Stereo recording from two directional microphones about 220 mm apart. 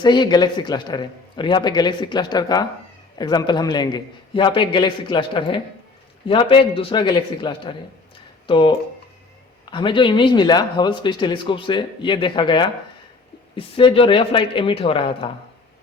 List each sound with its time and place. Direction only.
0.0 s speech: 20° left (ahead or behind)